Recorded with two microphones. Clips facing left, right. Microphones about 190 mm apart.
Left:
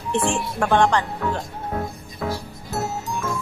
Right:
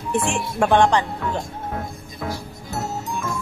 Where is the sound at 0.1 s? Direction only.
15° right (ahead or behind).